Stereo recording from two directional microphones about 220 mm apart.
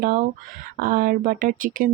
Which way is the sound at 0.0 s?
40° right (ahead or behind).